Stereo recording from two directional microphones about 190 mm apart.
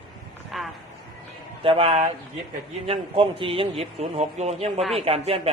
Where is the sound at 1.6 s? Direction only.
30° right (ahead or behind).